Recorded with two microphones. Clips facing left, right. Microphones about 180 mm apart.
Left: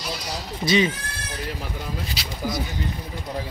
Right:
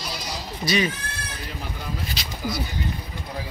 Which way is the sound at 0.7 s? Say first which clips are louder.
Left 3 dB; 20° left (ahead or behind).